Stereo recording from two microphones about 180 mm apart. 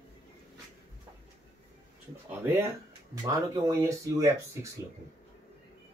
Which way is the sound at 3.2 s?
15° right (ahead or behind).